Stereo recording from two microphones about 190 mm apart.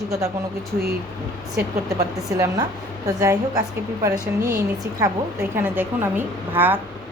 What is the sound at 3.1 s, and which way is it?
A woman's voice, 20° right (ahead or behind).